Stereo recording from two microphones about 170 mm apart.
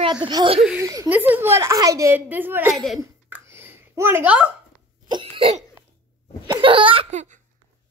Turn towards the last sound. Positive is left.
turn(degrees=-30)  # may be behind; listen again after turning